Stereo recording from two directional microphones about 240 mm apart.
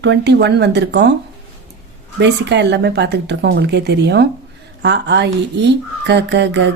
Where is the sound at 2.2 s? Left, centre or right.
Right.